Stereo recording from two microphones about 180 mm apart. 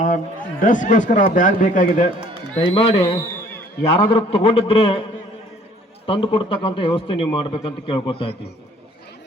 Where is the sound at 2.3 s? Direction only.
30° left (ahead or behind).